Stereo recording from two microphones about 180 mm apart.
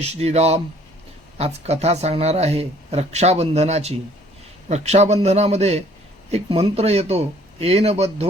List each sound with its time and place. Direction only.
0.0 s speech: 35° right (ahead or behind)